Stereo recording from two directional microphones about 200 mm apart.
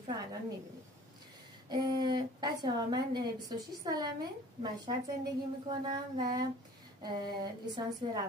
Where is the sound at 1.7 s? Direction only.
20° right (ahead or behind).